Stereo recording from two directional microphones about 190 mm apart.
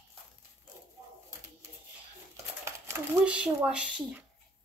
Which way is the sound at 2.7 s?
15° right (ahead or behind).